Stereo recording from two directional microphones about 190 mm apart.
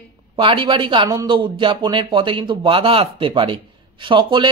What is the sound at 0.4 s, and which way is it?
Speech, 25° right (ahead or behind).